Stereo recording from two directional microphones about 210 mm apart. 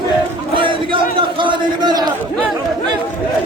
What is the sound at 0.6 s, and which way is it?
Crowd, 25° right (ahead or behind).